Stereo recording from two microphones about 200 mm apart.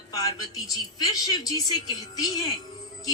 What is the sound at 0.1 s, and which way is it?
A woman's voice, 15° left (ahead or behind).